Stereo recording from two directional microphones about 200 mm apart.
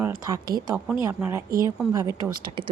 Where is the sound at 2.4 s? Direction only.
25° right (ahead or behind).